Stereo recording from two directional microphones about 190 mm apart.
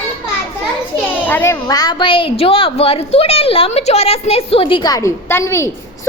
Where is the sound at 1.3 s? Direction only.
10° left (ahead or behind).